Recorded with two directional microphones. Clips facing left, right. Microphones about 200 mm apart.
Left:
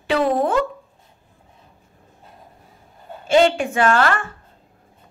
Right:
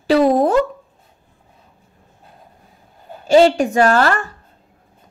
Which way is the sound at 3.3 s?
40° right (ahead or behind).